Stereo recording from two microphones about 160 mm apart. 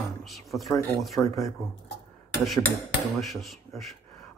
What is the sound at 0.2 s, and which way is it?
Speech, centre (ahead or behind).